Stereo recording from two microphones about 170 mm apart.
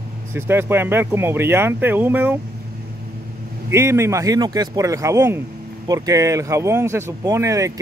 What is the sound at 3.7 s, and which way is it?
Speech, 15° right (ahead or behind).